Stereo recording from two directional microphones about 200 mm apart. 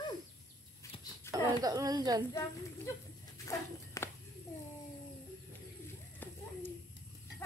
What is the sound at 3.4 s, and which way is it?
Walk, 15° left (ahead or behind).